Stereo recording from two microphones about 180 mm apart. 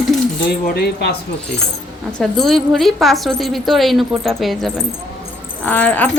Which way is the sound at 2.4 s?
Centre (ahead or behind).